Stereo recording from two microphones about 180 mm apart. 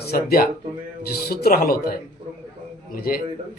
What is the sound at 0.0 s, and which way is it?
A man's voice, 60° left (ahead or behind).